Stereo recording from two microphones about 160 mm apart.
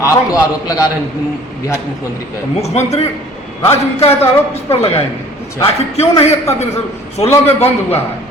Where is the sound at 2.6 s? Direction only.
40° left (ahead or behind).